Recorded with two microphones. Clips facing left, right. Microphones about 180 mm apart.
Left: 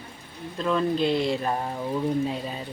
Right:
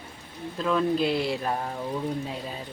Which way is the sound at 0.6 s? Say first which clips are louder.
Even; centre (ahead or behind).